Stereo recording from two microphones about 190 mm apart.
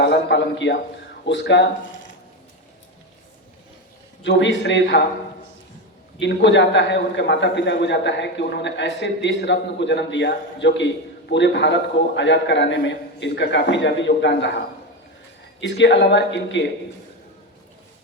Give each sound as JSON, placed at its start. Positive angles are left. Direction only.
{"t": 0.0, "sound": "a man's voice", "side_deg": 65}
{"t": 4.2, "sound": "a man's voice", "side_deg": 70}
{"t": 6.1, "sound": "a man's voice", "side_deg": 70}
{"t": 15.6, "sound": "a man's voice", "side_deg": 70}